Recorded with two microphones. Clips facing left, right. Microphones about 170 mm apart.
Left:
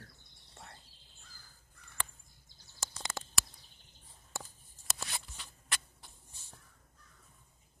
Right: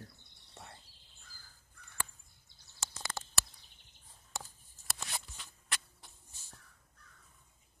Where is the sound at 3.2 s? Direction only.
15° left (ahead or behind).